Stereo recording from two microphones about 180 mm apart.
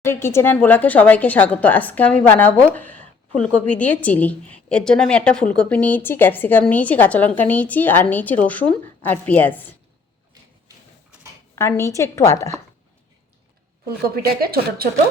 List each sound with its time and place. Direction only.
0.0 s a woman's voice: 15° left (ahead or behind)
11.5 s a woman's voice: 15° left (ahead or behind)
14.2 s speech: 55° right (ahead or behind)